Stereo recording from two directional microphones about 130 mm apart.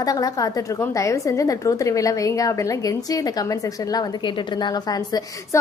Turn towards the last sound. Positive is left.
turn(degrees=30)  # may be behind; listen again after turning